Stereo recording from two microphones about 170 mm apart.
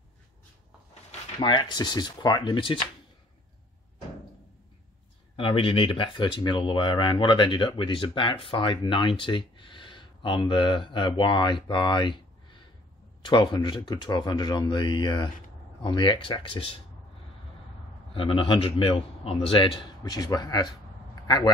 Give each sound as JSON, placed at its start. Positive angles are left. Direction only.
{"t": 1.4, "sound": "speech", "side_deg": 25}
{"t": 5.3, "sound": "a man's voice", "side_deg": 30}
{"t": 18.1, "sound": "a man's voice", "side_deg": 30}